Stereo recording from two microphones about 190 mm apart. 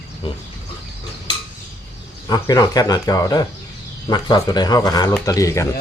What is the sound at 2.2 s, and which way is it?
Speech, 20° left (ahead or behind).